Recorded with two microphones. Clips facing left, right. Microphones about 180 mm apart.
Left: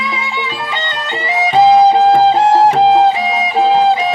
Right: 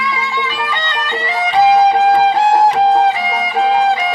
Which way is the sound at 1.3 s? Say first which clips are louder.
Left 3 dB; 25° left (ahead or behind).